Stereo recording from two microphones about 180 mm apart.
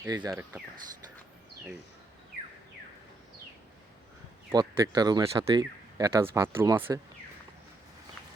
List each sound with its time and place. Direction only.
0.0 s speech: 15° right (ahead or behind)
4.5 s speech: 20° right (ahead or behind)